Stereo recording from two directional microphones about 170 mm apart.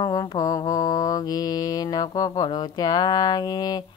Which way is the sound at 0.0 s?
20° left (ahead or behind).